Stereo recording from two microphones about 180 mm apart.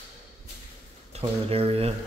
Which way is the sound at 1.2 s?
30° right (ahead or behind).